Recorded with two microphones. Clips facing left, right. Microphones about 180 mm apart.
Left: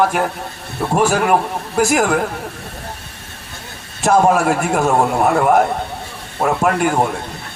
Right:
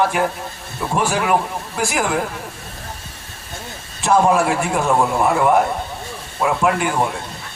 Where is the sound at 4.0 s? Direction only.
45° left (ahead or behind).